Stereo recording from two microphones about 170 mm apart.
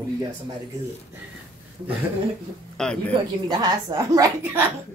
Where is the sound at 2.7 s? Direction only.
5° left (ahead or behind).